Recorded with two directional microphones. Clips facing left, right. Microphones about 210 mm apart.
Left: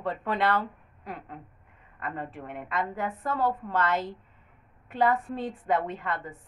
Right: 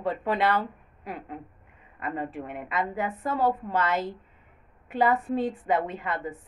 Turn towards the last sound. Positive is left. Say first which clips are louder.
# right 2 dB
turn(degrees=-5)  # may be behind; listen again after turning